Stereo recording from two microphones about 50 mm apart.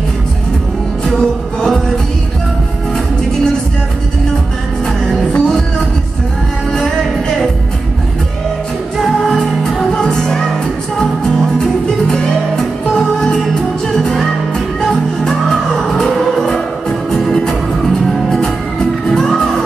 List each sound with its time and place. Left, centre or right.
5.0 s music: centre
9.3 s music: centre
11.5 s music: centre